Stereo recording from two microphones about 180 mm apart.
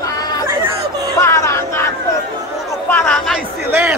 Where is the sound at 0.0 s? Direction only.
20° left (ahead or behind).